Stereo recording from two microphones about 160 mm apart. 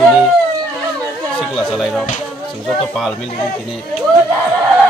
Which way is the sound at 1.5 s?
Centre (ahead or behind).